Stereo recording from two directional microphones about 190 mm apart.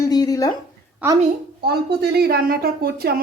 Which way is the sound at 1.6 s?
55° right (ahead or behind).